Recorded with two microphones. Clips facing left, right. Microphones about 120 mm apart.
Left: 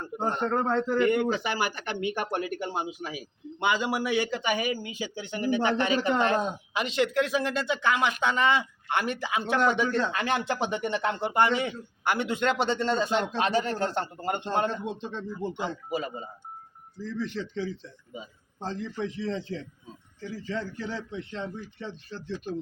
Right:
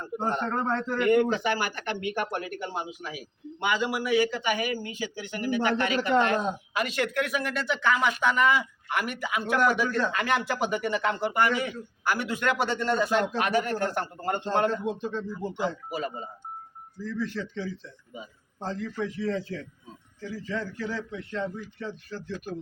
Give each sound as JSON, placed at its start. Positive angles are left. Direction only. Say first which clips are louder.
{"t": 0.5, "sound": "a man's voice", "louder": "left 2 dB", "side_deg": 10}
{"t": 1.5, "sound": "speech", "louder": "left 1 dB", "side_deg": 20}
{"t": 3.6, "sound": "speech", "louder": "left 1 dB", "side_deg": 25}
{"t": 18.6, "sound": "speech", "louder": "right 1 dB", "side_deg": 20}